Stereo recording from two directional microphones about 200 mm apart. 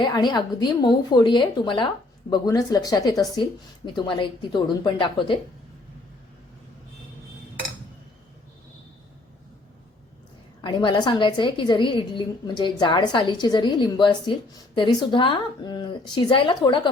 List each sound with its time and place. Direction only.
0.0 s a woman's voice: 20° left (ahead or behind)
10.6 s a woman's voice: 25° left (ahead or behind)